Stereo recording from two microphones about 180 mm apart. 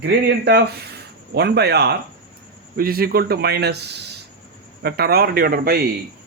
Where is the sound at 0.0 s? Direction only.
70° right (ahead or behind).